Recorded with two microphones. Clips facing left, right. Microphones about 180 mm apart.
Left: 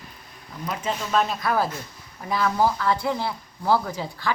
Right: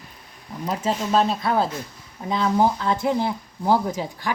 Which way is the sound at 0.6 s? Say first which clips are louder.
Right 4 dB; 35° right (ahead or behind).